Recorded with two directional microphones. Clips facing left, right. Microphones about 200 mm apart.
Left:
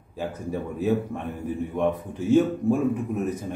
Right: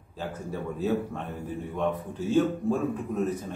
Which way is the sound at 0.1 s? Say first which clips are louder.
Left 4 dB; 15° left (ahead or behind).